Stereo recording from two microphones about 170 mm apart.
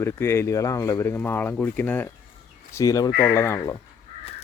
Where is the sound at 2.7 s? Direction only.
20° left (ahead or behind).